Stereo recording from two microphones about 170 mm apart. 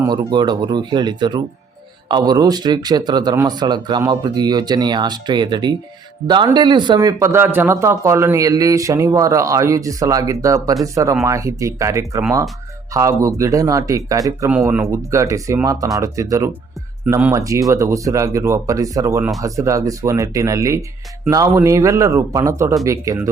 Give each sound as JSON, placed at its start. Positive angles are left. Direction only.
{"t": 0.0, "sound": "speech", "side_deg": -25}